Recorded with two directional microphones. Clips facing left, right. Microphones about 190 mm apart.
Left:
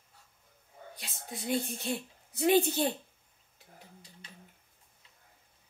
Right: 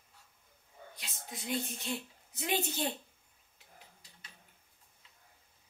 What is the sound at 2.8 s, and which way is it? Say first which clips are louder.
Speech: left 5 dB; 45° left (ahead or behind).